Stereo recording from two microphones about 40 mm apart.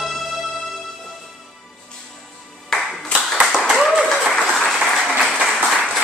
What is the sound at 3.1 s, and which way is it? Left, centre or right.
Clapping, centre.